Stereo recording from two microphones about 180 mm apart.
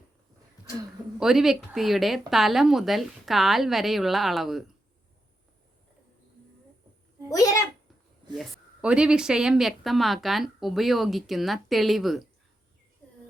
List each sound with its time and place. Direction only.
1.2 s speech: centre (ahead or behind)
7.3 s a child's voice: 20° left (ahead or behind)
8.4 s speech: 5° right (ahead or behind)